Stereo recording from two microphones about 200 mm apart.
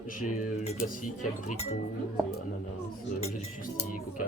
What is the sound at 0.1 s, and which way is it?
Speech, 35° left (ahead or behind).